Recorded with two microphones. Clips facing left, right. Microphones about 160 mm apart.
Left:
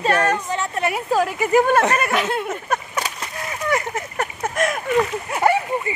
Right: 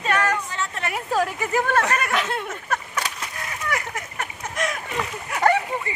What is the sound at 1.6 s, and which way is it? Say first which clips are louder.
Speech: left 5 dB; 15° left (ahead or behind).